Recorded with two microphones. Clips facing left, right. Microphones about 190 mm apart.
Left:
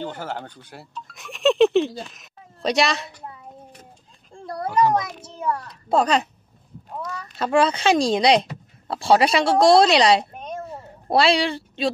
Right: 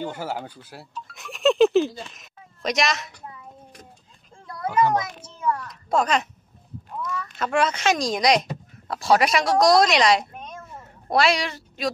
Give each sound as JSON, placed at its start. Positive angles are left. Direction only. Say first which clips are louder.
{"t": 0.0, "sound": "speech", "louder": "right 1 dB", "side_deg": -10}
{"t": 2.6, "sound": "a child's voice", "louder": "left 3 dB", "side_deg": 30}
{"t": 4.5, "sound": "a sound", "louder": "left 1 dB", "side_deg": 35}
{"t": 5.4, "sound": "a child's voice", "louder": "even", "side_deg": 30}